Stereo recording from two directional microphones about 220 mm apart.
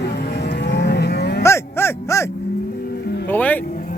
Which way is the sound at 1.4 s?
10° left (ahead or behind).